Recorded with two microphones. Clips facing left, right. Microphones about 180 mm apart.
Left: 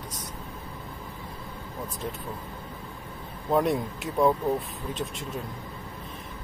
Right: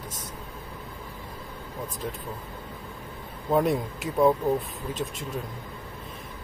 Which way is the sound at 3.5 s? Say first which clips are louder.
Right 1 dB; centre (ahead or behind).